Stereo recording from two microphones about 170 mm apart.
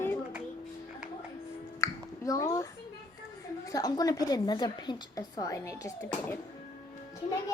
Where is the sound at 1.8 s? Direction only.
20° left (ahead or behind).